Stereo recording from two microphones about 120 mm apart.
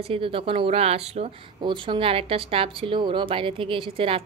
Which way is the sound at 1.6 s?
45° right (ahead or behind).